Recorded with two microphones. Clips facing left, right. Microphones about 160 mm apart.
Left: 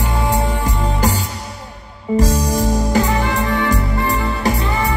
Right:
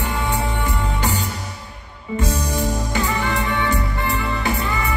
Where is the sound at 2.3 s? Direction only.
40° left (ahead or behind).